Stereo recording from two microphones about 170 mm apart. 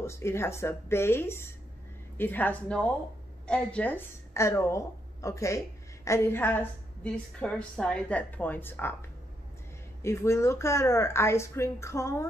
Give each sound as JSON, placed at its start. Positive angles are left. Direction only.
{"t": 0.0, "sound": "a woman's voice", "side_deg": 15}
{"t": 10.0, "sound": "a woman's voice", "side_deg": 15}